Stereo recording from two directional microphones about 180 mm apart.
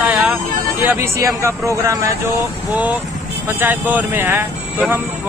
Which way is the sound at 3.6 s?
10° right (ahead or behind).